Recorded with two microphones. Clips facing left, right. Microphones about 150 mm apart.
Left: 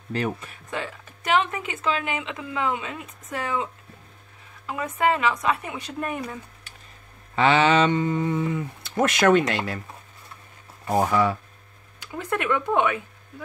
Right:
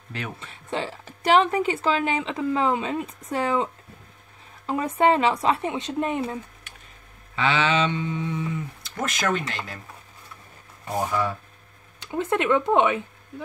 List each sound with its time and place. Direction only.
0.4 s a woman's voice: 30° right (ahead or behind)
7.3 s speech: 40° left (ahead or behind); by 9.8 s 65° left (ahead or behind)
10.9 s speech: 85° left
12.0 s speech: 25° right (ahead or behind)